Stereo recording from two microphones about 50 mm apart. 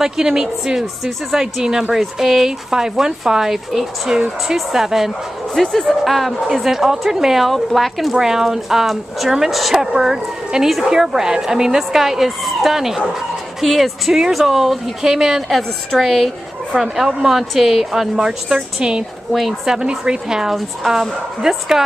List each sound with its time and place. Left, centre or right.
0.0 s speech: centre
5.5 s speech: centre
19.3 s speech: centre
19.7 s speech: centre